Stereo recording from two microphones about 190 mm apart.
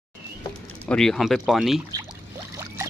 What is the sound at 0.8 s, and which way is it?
Speech, 5° left (ahead or behind).